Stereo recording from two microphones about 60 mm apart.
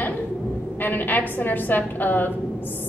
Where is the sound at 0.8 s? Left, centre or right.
Left.